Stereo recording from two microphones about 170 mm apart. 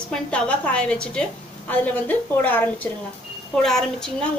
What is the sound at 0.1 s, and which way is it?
A woman's voice, 5° left (ahead or behind).